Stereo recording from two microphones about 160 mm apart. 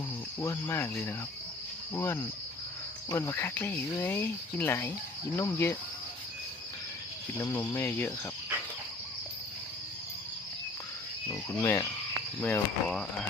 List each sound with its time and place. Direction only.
0.3 s speech: 15° left (ahead or behind)
7.5 s speech: 15° left (ahead or behind)
11.3 s speech: 20° left (ahead or behind)
12.9 s speech: 5° left (ahead or behind)